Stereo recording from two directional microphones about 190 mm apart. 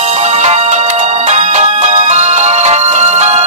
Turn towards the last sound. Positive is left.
turn(degrees=-35)  # may be behind; listen again after turning